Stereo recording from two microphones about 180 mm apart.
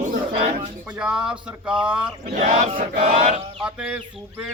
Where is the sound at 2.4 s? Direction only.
35° right (ahead or behind).